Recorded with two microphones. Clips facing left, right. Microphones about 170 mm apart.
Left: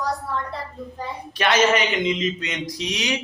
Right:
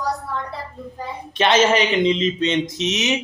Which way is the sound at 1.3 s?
25° right (ahead or behind).